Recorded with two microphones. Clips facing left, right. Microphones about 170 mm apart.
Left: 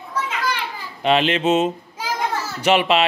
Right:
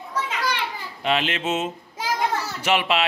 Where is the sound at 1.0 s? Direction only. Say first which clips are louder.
Left 6 dB; 30° left (ahead or behind).